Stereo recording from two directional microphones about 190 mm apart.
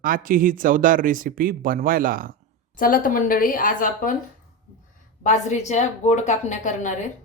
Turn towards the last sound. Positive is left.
turn(degrees=40)  # may be behind; listen again after turning